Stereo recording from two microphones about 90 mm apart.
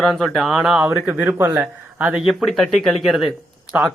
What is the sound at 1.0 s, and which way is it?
Speech, 15° right (ahead or behind).